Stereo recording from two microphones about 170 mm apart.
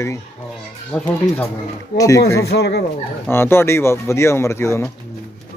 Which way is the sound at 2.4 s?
75° left (ahead or behind).